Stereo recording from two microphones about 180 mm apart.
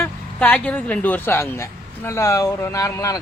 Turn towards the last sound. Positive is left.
turn(degrees=20)  # may be behind; listen again after turning